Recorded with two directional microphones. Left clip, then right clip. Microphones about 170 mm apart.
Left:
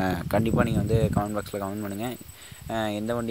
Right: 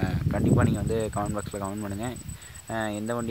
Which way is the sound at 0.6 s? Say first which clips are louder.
Left 2 dB; 20° left (ahead or behind).